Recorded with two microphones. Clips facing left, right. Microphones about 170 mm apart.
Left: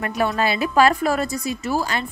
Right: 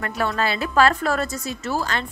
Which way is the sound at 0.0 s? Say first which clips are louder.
Left 2 dB; 15° left (ahead or behind).